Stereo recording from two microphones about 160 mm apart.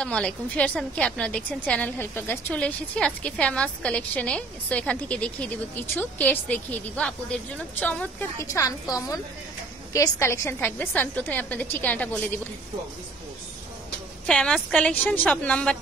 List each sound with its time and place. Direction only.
0.0 s a woman's voice: 5° left (ahead or behind)
14.2 s a woman's voice: 5° left (ahead or behind)